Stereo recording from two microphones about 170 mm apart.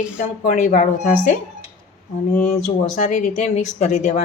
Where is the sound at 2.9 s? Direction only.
45° left (ahead or behind).